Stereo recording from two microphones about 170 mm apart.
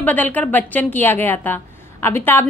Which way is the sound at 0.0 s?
10° left (ahead or behind).